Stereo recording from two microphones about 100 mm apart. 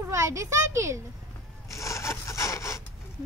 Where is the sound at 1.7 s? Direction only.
30° left (ahead or behind).